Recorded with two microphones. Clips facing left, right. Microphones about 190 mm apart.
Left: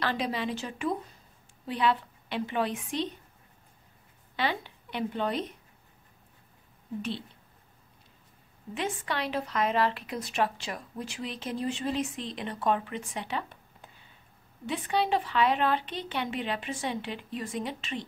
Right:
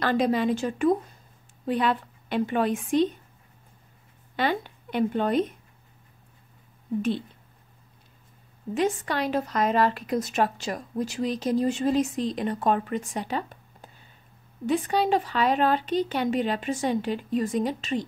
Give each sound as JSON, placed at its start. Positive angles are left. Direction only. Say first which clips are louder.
{"t": 0.0, "sound": "speech", "louder": "right 8 dB", "side_deg": -45}
{"t": 4.4, "sound": "speech", "louder": "right 5 dB", "side_deg": -50}
{"t": 7.0, "sound": "speech", "louder": "right 8 dB", "side_deg": -50}
{"t": 8.7, "sound": "speech", "louder": "right 7 dB", "side_deg": -40}